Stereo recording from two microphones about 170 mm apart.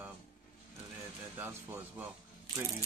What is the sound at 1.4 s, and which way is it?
Speech, 10° right (ahead or behind).